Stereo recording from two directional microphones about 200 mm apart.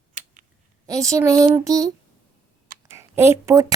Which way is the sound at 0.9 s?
15° right (ahead or behind).